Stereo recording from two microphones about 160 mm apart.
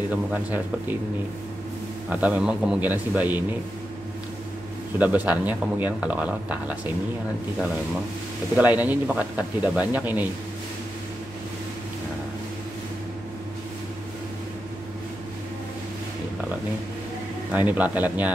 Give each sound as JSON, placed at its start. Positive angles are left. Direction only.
{"t": 0.1, "sound": "speech", "side_deg": -10}
{"t": 2.0, "sound": "speech", "side_deg": -10}
{"t": 4.9, "sound": "speech", "side_deg": -10}
{"t": 8.5, "sound": "speech", "side_deg": -10}
{"t": 17.5, "sound": "speech", "side_deg": -10}